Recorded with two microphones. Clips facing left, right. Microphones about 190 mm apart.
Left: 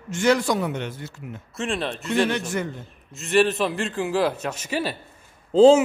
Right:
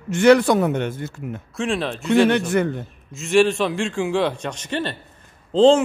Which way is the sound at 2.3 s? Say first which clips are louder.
Right 7 dB; 60° right (ahead or behind).